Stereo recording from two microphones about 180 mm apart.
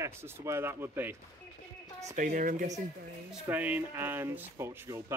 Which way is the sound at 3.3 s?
10° right (ahead or behind).